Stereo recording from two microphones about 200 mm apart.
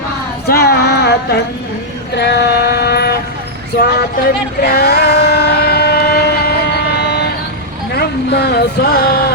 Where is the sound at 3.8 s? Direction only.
50° left (ahead or behind).